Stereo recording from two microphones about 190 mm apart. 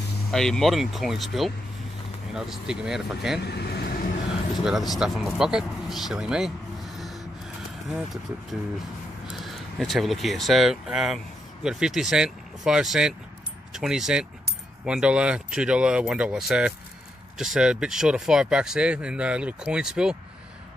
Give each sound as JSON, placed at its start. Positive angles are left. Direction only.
{"t": 0.3, "sound": "speech", "side_deg": 5}
{"t": 3.4, "sound": "vehicle", "side_deg": 55}
{"t": 4.9, "sound": "speech", "side_deg": 0}
{"t": 7.9, "sound": "speech", "side_deg": 0}